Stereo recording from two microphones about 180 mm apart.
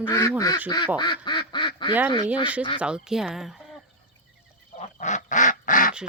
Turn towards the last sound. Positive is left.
turn(degrees=50)  # may be behind; listen again after turning